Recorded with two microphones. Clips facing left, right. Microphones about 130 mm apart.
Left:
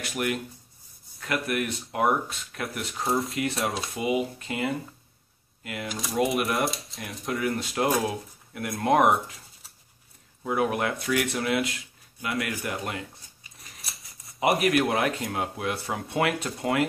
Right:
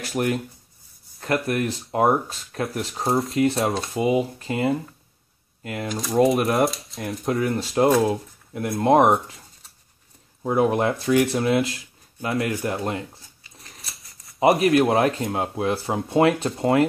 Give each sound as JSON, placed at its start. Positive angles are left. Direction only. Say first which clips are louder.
{"t": 0.0, "sound": "speech", "louder": "right 5 dB", "side_deg": -35}
{"t": 1.5, "sound": "speech", "louder": "right 4 dB", "side_deg": -30}
{"t": 3.1, "sound": "speech", "louder": "right 4 dB", "side_deg": 0}
{"t": 3.3, "sound": "speech", "louder": "right 7 dB", "side_deg": -30}
{"t": 5.9, "sound": "speech", "louder": "right 7 dB", "side_deg": 5}
{"t": 7.1, "sound": "speech", "louder": "right 5 dB", "side_deg": -30}
{"t": 10.4, "sound": "speech", "louder": "right 6 dB", "side_deg": -30}
{"t": 13.6, "sound": "a sound", "louder": "right 1 dB", "side_deg": 0}
{"t": 14.4, "sound": "speech", "louder": "right 6 dB", "side_deg": -30}